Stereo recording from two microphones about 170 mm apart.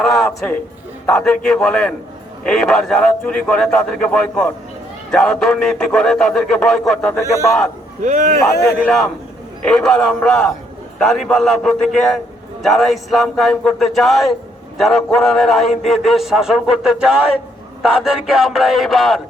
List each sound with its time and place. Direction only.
0.0 s a man's voice: centre (ahead or behind)
8.0 s speech: 50° right (ahead or behind)
8.9 s a man's voice: centre (ahead or behind)